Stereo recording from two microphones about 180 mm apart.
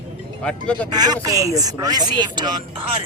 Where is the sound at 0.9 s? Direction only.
20° right (ahead or behind).